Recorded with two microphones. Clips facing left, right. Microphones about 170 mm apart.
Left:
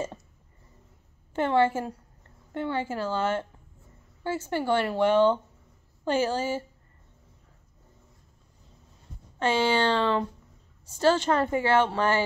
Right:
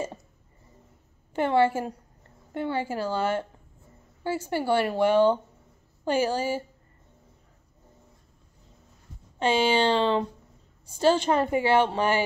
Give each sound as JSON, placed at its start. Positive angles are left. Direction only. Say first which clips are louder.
{"t": 1.3, "sound": "a woman's voice", "louder": "right 1 dB", "side_deg": -15}
{"t": 9.4, "sound": "a woman's voice", "louder": "right 1 dB", "side_deg": -15}